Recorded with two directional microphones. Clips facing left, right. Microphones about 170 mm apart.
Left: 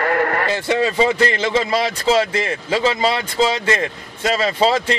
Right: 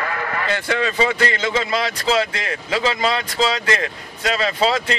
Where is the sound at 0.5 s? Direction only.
30° left (ahead or behind).